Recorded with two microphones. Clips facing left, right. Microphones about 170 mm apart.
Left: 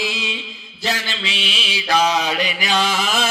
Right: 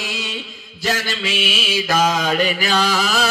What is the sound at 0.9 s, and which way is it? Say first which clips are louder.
Mantra: right 3 dB; 45° right (ahead or behind).